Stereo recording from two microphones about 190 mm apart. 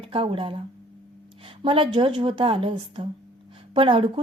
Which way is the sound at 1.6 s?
25° right (ahead or behind).